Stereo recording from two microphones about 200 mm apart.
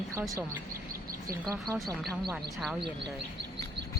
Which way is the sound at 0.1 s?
15° right (ahead or behind).